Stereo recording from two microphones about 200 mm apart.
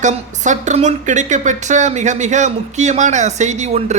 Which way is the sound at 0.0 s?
35° right (ahead or behind).